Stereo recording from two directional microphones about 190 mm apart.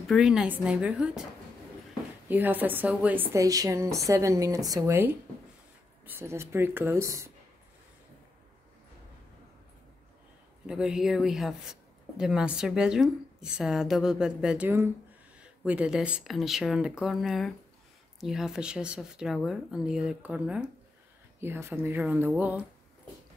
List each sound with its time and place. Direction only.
0.0 s speech: centre (ahead or behind)
2.2 s a woman's voice: 10° right (ahead or behind)
10.7 s a woman's voice: 5° right (ahead or behind)
22.0 s speech: centre (ahead or behind)